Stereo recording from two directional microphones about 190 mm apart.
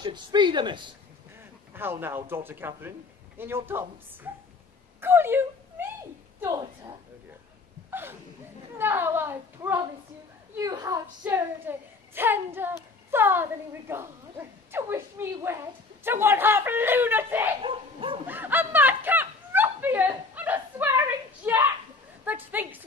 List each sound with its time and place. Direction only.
0.0 s speech: 25° right (ahead or behind)
1.7 s a woman's voice: 10° right (ahead or behind)
5.0 s a sound: 10° right (ahead or behind)
6.4 s a woman's voice: 20° right (ahead or behind)
7.9 s chuckle: 10° right (ahead or behind)
8.7 s a sound: 10° right (ahead or behind)
10.5 s a woman's voice: 20° right (ahead or behind)
17.6 s speech: 25° right (ahead or behind)
18.2 s snicker: 10° right (ahead or behind)
21.4 s a sound: 10° right (ahead or behind)
22.2 s a woman's voice: 10° right (ahead or behind)